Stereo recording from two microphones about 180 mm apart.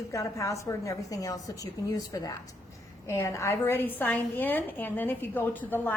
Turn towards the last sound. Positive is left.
turn(degrees=10)  # may be behind; listen again after turning